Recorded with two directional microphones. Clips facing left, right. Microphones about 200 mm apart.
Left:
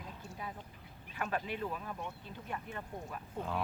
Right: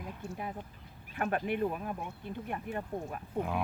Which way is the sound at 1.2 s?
55° right (ahead or behind).